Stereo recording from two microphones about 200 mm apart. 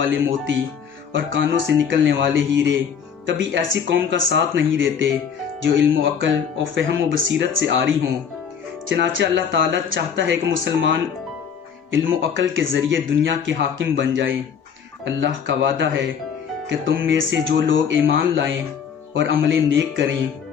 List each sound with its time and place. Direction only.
0.0 s speech: 70° right (ahead or behind)